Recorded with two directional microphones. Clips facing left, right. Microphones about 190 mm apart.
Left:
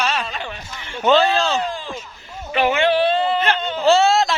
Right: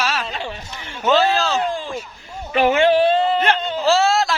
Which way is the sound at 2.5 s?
45° right (ahead or behind).